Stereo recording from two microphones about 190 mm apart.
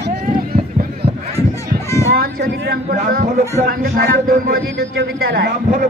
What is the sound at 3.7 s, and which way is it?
A man's voice, 50° right (ahead or behind).